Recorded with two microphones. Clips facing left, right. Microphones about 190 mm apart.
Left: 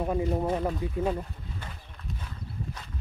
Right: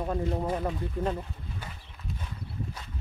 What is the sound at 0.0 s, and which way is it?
Speech, 10° left (ahead or behind).